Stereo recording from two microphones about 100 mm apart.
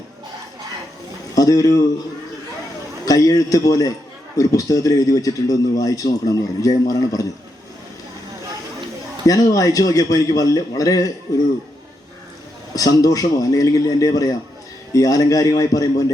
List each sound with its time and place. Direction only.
1.4 s a man's voice: 35° left (ahead or behind)
3.1 s a man's voice: 35° left (ahead or behind)
9.2 s a man's voice: 35° left (ahead or behind)
12.7 s a man's voice: 35° left (ahead or behind)